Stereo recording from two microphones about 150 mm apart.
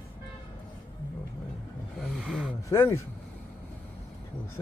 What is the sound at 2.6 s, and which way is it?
Speech, 15° left (ahead or behind).